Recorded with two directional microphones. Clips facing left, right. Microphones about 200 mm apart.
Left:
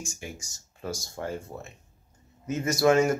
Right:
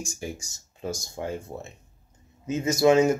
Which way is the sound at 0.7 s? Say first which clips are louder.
Right 2 dB; 20° right (ahead or behind).